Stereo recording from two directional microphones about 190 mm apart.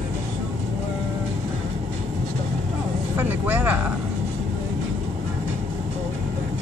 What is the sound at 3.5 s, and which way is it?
Vehicle, 10° right (ahead or behind).